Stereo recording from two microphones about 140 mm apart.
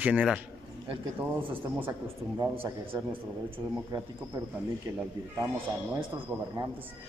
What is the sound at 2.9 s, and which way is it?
Speech, 30° right (ahead or behind).